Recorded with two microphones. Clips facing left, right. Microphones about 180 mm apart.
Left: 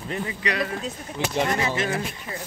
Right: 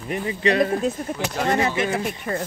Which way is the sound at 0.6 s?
50° right (ahead or behind).